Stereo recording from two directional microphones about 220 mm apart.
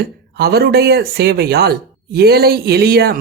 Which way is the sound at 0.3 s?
45° right (ahead or behind).